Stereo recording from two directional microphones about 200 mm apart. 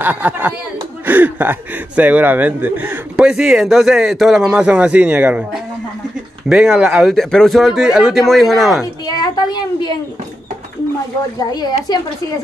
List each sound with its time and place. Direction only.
0.0 s speech: 10° right (ahead or behind)
9.0 s a sound: 20° left (ahead or behind)
11.3 s a woman's voice: 20° left (ahead or behind)